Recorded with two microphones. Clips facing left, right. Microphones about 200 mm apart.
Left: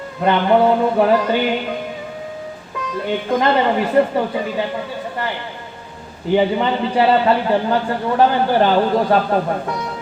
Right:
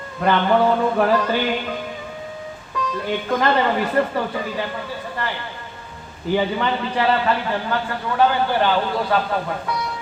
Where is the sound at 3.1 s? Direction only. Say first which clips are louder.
Left 3 dB; 25° left (ahead or behind).